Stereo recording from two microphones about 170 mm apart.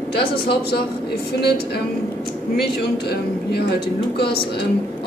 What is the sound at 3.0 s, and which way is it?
Speech, 75° left (ahead or behind).